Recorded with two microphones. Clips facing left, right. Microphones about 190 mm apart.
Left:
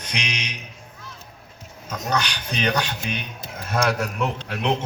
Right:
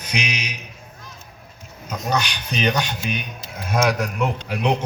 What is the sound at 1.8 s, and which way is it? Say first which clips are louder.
Speech: right 2 dB; 10° right (ahead or behind).